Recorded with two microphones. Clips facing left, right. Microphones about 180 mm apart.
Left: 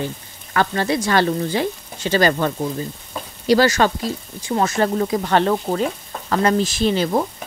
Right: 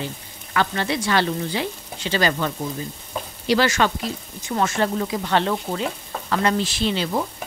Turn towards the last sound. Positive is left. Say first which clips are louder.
# left 5 dB
turn(degrees=45)  # may be behind; listen again after turning